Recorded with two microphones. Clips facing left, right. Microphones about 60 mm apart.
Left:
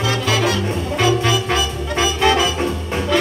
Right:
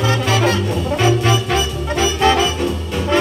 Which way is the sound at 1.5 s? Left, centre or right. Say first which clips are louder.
Right 1 dB; left.